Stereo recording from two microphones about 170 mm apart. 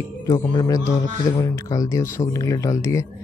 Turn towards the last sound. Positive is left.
turn(degrees=20)  # may be behind; listen again after turning